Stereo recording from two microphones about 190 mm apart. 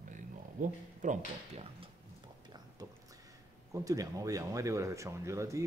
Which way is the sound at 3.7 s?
15° right (ahead or behind).